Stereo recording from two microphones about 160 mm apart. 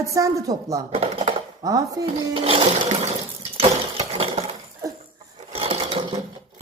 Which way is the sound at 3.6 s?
40° right (ahead or behind).